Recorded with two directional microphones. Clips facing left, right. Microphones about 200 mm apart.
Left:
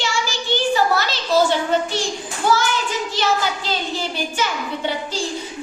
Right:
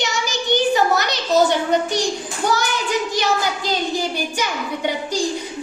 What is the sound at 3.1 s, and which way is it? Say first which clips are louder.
A child's voice: even; 15° right (ahead or behind).